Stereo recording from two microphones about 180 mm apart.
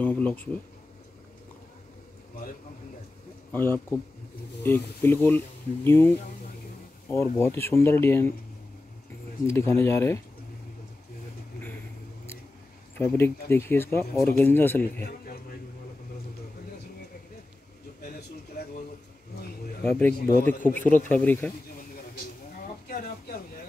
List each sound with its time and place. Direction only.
0.0 s speech: 10° left (ahead or behind)
3.5 s speech: 10° left (ahead or behind)
9.5 s speech: 15° left (ahead or behind)
12.9 s speech: 15° left (ahead or behind)
19.8 s speech: 10° left (ahead or behind)
20.2 s a man's voice: 55° left (ahead or behind)
20.6 s speech: 10° left (ahead or behind)
22.8 s a sound: 55° left (ahead or behind)